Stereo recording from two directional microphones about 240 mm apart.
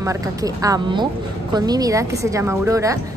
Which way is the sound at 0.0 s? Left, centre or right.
Centre.